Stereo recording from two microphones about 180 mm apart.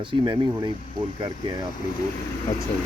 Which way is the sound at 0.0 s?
25° right (ahead or behind).